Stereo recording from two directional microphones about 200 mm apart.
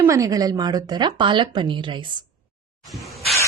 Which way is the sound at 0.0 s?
15° right (ahead or behind).